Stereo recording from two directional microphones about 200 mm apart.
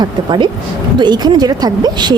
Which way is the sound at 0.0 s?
25° right (ahead or behind).